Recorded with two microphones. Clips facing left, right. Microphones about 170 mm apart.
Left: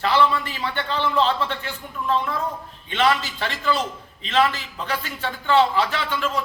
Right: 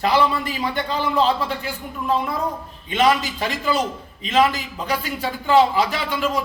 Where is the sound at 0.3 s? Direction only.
10° right (ahead or behind).